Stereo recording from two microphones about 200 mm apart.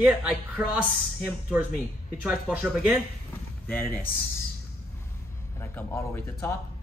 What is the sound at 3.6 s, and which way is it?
Speech, 5° left (ahead or behind).